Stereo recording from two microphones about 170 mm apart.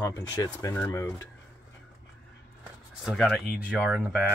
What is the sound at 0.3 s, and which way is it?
Speech, 20° left (ahead or behind).